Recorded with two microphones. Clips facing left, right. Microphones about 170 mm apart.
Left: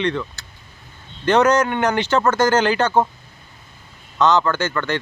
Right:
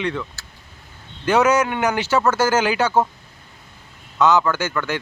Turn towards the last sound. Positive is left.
turn(degrees=-10)  # may be behind; listen again after turning